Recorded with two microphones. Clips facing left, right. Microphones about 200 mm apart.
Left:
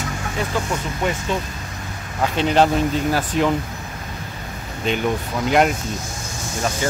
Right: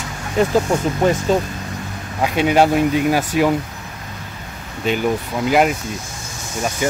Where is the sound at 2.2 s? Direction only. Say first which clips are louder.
Right 2 dB; 10° right (ahead or behind).